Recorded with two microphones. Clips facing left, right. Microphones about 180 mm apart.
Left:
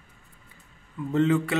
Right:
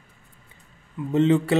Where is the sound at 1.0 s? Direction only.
20° right (ahead or behind).